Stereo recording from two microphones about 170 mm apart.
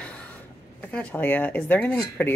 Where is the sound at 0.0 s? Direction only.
5° left (ahead or behind).